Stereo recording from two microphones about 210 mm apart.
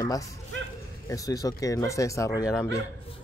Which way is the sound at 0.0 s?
15° left (ahead or behind).